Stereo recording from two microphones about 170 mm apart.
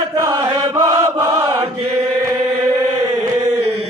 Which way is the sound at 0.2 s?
20° right (ahead or behind).